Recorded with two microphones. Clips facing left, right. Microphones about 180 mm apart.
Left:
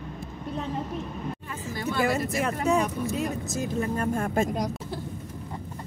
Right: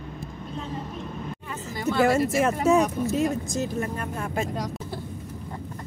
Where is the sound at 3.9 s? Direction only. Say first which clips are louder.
Left 4 dB; 50° left (ahead or behind).